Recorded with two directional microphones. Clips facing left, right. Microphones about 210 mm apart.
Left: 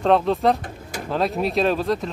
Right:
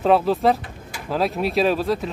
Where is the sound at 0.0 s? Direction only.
5° right (ahead or behind).